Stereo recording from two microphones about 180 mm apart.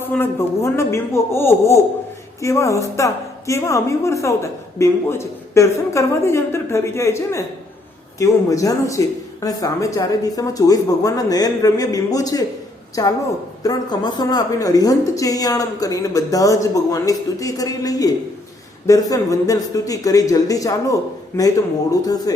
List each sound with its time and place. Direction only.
0.0 s a woman's voice: 10° left (ahead or behind)